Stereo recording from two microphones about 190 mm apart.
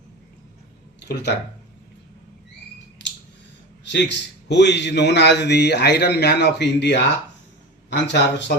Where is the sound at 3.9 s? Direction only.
65° left (ahead or behind).